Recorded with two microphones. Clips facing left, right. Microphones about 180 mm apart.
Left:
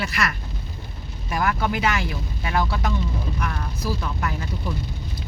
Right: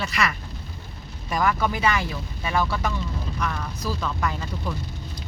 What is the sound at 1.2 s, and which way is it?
Speech, 5° left (ahead or behind).